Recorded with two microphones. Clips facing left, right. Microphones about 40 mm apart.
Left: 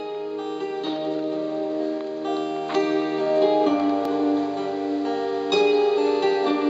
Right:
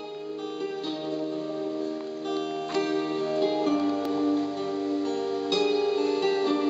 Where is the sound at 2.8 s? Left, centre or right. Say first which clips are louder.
Left 5 dB; left.